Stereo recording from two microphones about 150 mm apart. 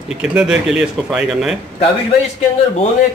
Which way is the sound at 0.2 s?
5° right (ahead or behind).